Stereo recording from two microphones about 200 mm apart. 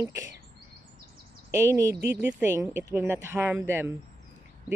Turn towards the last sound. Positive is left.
turn(degrees=-10)  # may be behind; listen again after turning